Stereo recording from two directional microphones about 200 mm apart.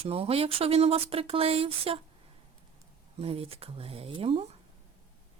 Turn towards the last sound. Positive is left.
turn(degrees=-30)  # may be behind; listen again after turning